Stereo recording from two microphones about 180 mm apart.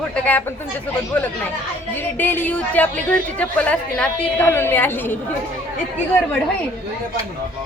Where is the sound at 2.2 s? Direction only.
10° left (ahead or behind).